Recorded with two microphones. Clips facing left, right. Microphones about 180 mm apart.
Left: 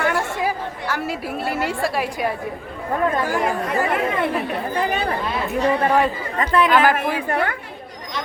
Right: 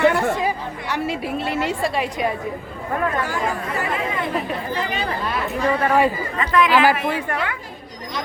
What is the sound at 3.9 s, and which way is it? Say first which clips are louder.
Chatter: left 3 dB; 65° left (ahead or behind).